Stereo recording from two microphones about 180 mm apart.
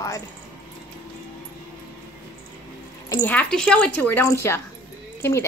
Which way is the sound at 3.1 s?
10° left (ahead or behind).